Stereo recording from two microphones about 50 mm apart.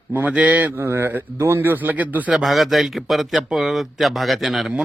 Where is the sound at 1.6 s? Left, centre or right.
Right.